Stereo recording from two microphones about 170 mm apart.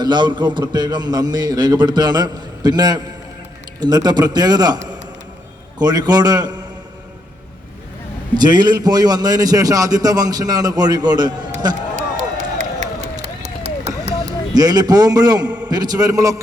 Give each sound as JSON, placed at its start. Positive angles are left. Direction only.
{"t": 0.0, "sound": "a man's voice", "side_deg": -25}
{"t": 5.8, "sound": "a man's voice", "side_deg": -25}
{"t": 8.4, "sound": "a man's voice", "side_deg": -25}
{"t": 11.9, "sound": "run", "side_deg": -45}
{"t": 14.5, "sound": "a man's voice", "side_deg": -25}